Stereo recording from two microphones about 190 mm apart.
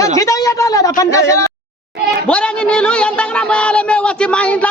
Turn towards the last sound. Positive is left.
turn(degrees=5)  # may be behind; listen again after turning